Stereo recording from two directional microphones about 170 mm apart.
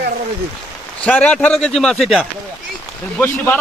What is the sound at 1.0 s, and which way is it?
Speech, 5° left (ahead or behind).